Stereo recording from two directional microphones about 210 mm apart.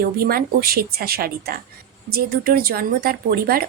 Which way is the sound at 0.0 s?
45° right (ahead or behind).